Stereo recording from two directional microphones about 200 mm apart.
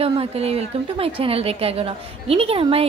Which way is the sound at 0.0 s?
30° right (ahead or behind).